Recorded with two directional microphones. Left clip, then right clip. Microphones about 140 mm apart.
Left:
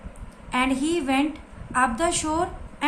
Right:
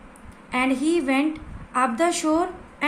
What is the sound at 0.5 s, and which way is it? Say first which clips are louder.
A woman's voice: right 1 dB; 40° right (ahead or behind).